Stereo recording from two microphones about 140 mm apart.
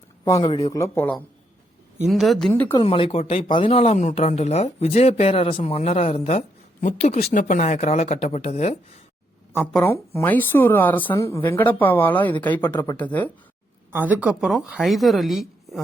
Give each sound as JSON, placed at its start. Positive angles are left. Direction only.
{"t": 0.4, "sound": "speech", "side_deg": 40}
{"t": 0.7, "sound": "speech", "side_deg": 20}
{"t": 2.0, "sound": "a woman's voice", "side_deg": 0}
{"t": 2.5, "sound": "speech", "side_deg": 15}
{"t": 2.8, "sound": "speech", "side_deg": 40}
{"t": 7.3, "sound": "speech", "side_deg": 60}
{"t": 9.8, "sound": "speech", "side_deg": 20}
{"t": 13.9, "sound": "a woman's voice", "side_deg": -10}